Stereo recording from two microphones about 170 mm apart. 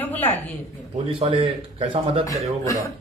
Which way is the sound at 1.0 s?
30° right (ahead or behind).